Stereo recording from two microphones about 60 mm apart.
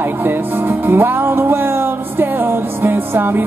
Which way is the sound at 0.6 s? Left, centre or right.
Right.